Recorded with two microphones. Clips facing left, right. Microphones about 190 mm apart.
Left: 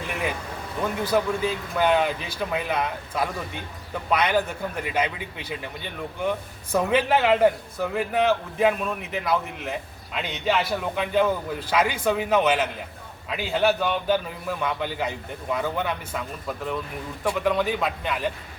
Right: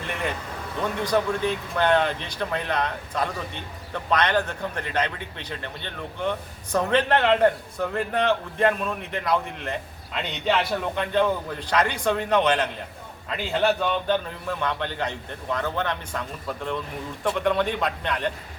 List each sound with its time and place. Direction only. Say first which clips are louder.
0.1 s a man's voice: even; 5° left (ahead or behind)